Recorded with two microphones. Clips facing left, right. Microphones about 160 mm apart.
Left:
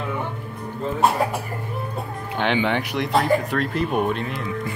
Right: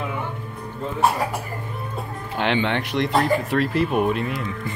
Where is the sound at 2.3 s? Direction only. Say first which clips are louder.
Even; centre (ahead or behind).